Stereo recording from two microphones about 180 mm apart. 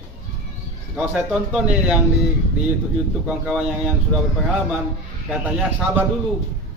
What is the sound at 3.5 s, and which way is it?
Speech, 5° right (ahead or behind).